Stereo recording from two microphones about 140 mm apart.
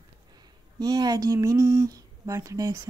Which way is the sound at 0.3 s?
30° right (ahead or behind).